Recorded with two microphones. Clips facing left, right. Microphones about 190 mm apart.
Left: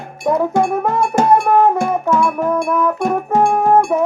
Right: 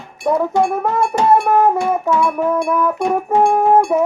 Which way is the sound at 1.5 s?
5° right (ahead or behind).